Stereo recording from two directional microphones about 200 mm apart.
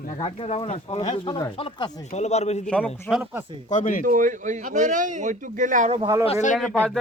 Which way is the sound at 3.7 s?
40° left (ahead or behind).